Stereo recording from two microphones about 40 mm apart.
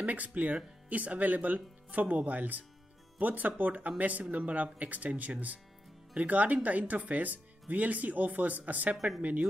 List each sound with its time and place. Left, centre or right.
0.0 s speech: right